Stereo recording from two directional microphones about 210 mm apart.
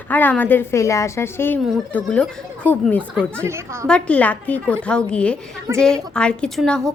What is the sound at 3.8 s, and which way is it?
A woman's voice, 5° left (ahead or behind).